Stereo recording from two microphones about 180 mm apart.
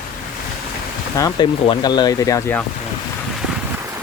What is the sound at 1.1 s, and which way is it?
Speech, 20° left (ahead or behind).